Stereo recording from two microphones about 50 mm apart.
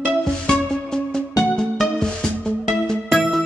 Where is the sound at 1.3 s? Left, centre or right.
Centre.